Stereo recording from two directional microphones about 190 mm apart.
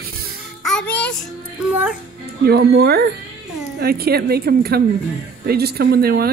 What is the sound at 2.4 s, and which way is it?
A woman's voice, 55° right (ahead or behind).